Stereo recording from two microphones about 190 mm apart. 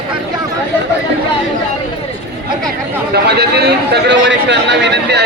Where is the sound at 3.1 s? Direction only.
60° right (ahead or behind).